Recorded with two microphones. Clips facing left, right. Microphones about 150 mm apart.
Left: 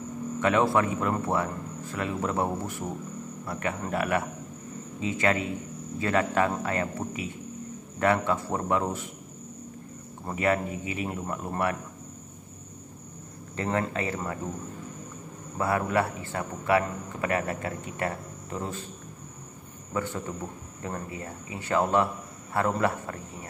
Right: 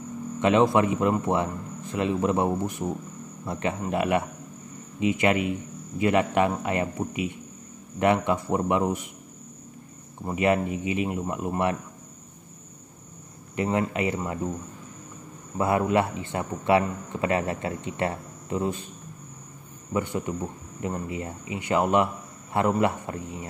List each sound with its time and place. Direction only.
0.4 s a man's voice: 20° right (ahead or behind)
10.2 s a man's voice: 20° right (ahead or behind)
13.6 s speech: 15° right (ahead or behind)
15.5 s a man's voice: 20° right (ahead or behind)
19.9 s a man's voice: 15° right (ahead or behind)